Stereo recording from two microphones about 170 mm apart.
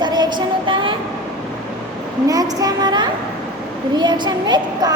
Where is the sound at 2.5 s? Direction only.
25° right (ahead or behind).